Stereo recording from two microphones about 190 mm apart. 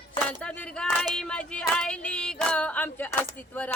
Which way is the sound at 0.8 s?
5° left (ahead or behind).